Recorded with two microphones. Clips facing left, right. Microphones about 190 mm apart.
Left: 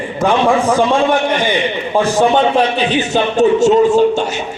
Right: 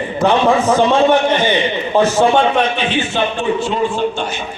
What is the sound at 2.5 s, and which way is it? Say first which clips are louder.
A man's voice: left 3 dB; 40° left (ahead or behind).